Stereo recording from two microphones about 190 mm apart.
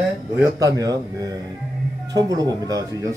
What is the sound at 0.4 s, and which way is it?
Speech, 15° right (ahead or behind).